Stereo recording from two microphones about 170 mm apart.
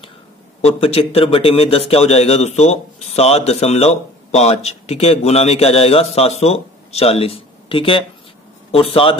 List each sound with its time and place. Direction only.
0.7 s speech: 35° left (ahead or behind)